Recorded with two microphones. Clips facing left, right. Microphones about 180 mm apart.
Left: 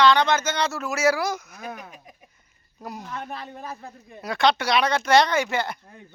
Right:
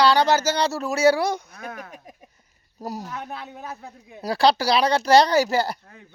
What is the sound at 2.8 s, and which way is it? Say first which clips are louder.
Speech: right 5 dB; 40° right (ahead or behind).